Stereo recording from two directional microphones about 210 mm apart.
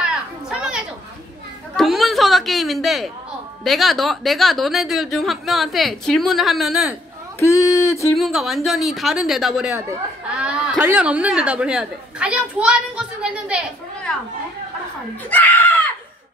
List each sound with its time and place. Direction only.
0.0 s a sound: 5° right (ahead or behind)
1.8 s speech: centre (ahead or behind)
7.3 s speech: 15° left (ahead or behind)
8.2 s speech: centre (ahead or behind)
15.2 s speech: 10° left (ahead or behind)